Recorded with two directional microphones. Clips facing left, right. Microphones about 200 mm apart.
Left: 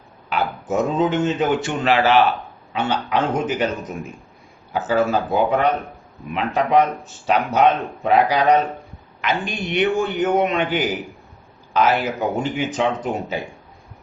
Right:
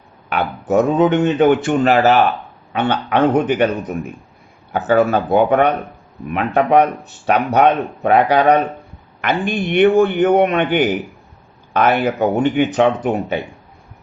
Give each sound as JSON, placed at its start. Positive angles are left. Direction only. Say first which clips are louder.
{"t": 0.3, "sound": "speech", "louder": "right 4 dB", "side_deg": -60}
{"t": 1.8, "sound": "speech", "louder": "right 1 dB", "side_deg": -45}
{"t": 2.7, "sound": "speech", "louder": "right 4 dB", "side_deg": -60}
{"t": 4.7, "sound": "speech", "louder": "right 4 dB", "side_deg": -60}